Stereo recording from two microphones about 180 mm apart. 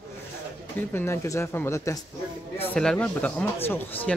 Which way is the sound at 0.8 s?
10° left (ahead or behind).